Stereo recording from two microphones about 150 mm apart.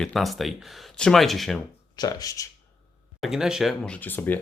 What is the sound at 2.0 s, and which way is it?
Speech, 25° left (ahead or behind).